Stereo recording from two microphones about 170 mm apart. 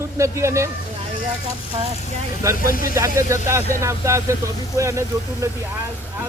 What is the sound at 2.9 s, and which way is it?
Speech, 20° right (ahead or behind).